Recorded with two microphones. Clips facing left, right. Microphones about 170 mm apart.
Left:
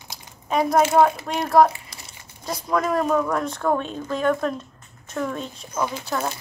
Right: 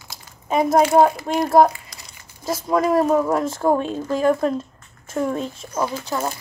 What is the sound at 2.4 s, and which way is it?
Speech, 25° right (ahead or behind).